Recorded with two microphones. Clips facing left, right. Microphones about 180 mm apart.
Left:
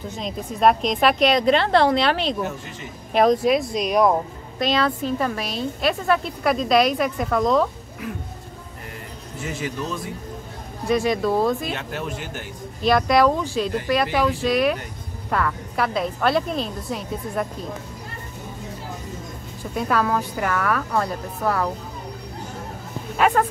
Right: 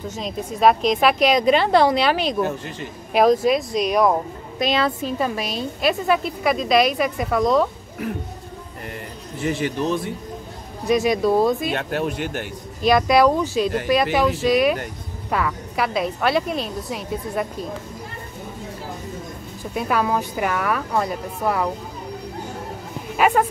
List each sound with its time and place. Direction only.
0.2 s a woman's voice: centre (ahead or behind)
4.6 s a woman's voice: 15° right (ahead or behind)
9.4 s a man's voice: 60° right (ahead or behind)
10.9 s a woman's voice: 15° right (ahead or behind)
12.8 s a woman's voice: 10° right (ahead or behind)
14.4 s a woman's voice: 15° right (ahead or behind)
19.7 s a woman's voice: 10° right (ahead or behind)
23.1 s speech: 10° right (ahead or behind)